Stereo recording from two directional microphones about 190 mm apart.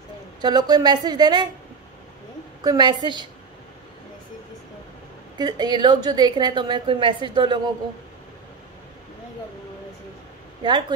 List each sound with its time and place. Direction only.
0.4 s a woman's voice: 20° right (ahead or behind)
2.6 s a woman's voice: 20° right (ahead or behind)
5.4 s a woman's voice: 20° right (ahead or behind)
10.6 s a woman's voice: 25° right (ahead or behind)